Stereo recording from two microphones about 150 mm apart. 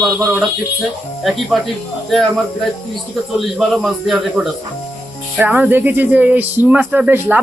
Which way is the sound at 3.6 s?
Centre (ahead or behind).